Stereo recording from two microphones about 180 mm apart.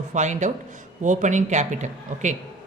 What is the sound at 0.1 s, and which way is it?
Speech, 40° right (ahead or behind).